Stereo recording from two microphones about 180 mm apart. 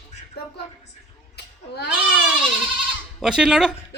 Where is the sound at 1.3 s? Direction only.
65° left (ahead or behind).